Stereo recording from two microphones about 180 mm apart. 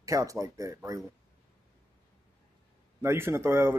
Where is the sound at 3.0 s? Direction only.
15° right (ahead or behind).